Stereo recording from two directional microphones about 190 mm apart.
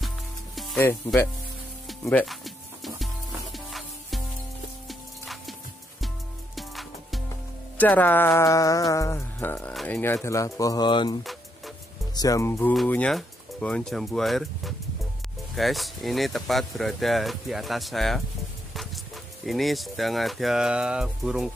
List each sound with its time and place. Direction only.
0.6 s music: centre (ahead or behind)
0.8 s music: 10° left (ahead or behind)
1.9 s music: centre (ahead or behind); by 11.1 s 25° left (ahead or behind)
12.2 s music: 15° left (ahead or behind)
12.7 s speech: 5° left (ahead or behind)
19.4 s speech: centre (ahead or behind)